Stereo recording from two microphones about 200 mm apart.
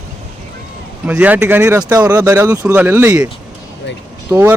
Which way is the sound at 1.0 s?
10° right (ahead or behind).